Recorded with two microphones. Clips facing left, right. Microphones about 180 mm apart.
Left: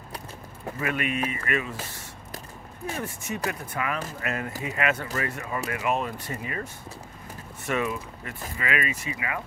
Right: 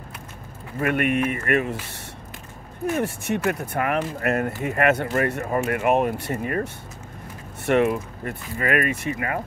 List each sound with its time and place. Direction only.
0.7 s speech: 55° right (ahead or behind)